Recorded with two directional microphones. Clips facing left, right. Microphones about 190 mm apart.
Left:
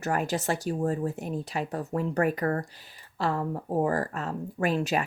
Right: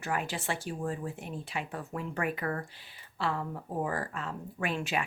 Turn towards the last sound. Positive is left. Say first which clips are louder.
# left 6 dB
turn(degrees=40)  # may be behind; listen again after turning